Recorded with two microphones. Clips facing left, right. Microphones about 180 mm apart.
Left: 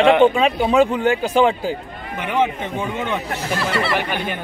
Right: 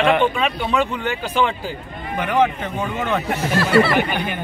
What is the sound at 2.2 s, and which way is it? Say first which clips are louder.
Speech: right 1 dB; 20° left (ahead or behind).